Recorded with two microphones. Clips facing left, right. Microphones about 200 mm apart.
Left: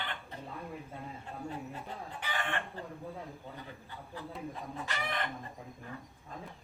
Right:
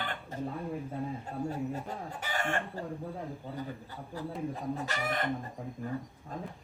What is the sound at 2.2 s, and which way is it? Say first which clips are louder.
Chicken: right 4 dB; 45° right (ahead or behind).